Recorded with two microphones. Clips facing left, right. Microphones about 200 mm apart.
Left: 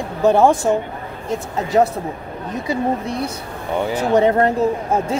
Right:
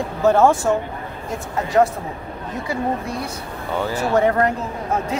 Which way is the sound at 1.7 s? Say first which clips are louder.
Left 1 dB; 20° left (ahead or behind).